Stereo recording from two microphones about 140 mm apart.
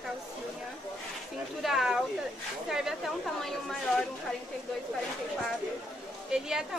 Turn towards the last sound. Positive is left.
turn(degrees=-5)  # may be behind; listen again after turning